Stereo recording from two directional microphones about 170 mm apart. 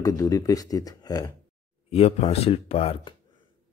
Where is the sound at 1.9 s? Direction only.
35° left (ahead or behind).